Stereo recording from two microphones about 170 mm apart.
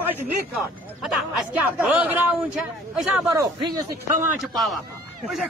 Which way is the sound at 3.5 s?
25° right (ahead or behind).